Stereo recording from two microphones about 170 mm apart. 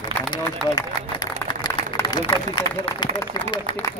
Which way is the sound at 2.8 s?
35° left (ahead or behind).